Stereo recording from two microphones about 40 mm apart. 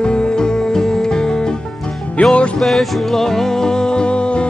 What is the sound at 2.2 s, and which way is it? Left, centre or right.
Music, left.